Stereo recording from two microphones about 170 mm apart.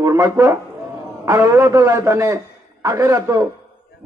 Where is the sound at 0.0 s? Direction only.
15° right (ahead or behind).